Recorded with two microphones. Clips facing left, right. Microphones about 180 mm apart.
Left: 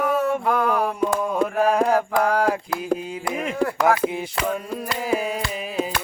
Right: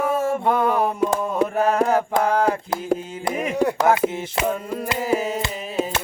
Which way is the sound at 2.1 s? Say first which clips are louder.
Right 1 dB; 25° right (ahead or behind).